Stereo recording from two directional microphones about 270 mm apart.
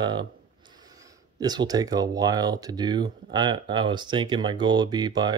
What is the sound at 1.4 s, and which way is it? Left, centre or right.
Speech, centre.